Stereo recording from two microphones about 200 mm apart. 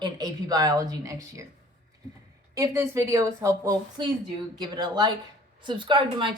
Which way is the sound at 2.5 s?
15° right (ahead or behind).